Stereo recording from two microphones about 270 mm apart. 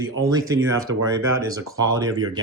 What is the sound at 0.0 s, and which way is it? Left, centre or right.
Speech, centre.